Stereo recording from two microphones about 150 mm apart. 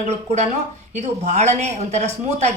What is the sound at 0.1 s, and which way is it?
Speech, 45° right (ahead or behind).